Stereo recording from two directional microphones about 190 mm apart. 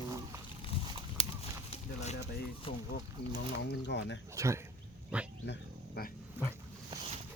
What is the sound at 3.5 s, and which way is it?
Speech, 65° left (ahead or behind).